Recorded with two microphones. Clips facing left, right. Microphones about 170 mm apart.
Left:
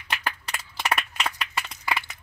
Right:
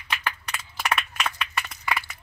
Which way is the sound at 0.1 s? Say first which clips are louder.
Even; 40° left (ahead or behind).